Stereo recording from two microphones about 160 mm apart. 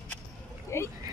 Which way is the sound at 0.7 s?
20° left (ahead or behind).